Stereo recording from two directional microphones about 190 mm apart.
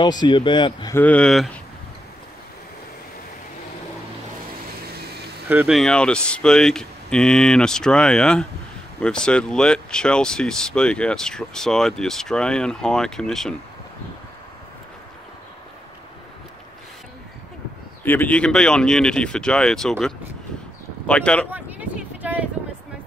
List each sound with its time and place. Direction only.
0.0 s speech: 20° left (ahead or behind)
0.9 s speech: 5° left (ahead or behind)
5.5 s speech: 10° right (ahead or behind)
5.8 s speech: 5° left (ahead or behind)
18.0 s speech: 10° left (ahead or behind)
21.5 s a sound: 10° right (ahead or behind)